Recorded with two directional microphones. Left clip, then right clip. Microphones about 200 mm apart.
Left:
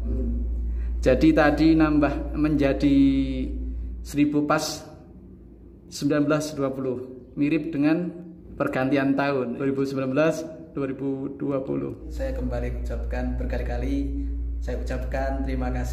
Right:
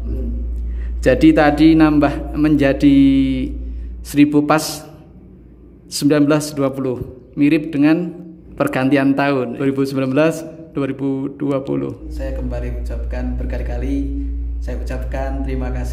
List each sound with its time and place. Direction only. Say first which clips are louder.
1.0 s a man's voice: right 7 dB; 10° right (ahead or behind)
5.9 s a man's voice: right 8 dB; 15° right (ahead or behind)
12.1 s a man's voice: right 3 dB; 5° right (ahead or behind)